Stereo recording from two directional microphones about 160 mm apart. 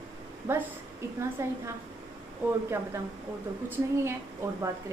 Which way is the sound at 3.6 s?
15° right (ahead or behind).